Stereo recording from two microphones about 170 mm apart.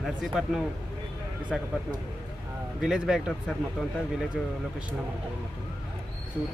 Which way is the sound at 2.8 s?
5° right (ahead or behind).